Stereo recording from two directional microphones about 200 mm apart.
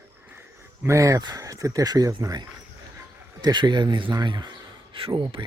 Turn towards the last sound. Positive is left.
turn(degrees=-25)  # may be behind; listen again after turning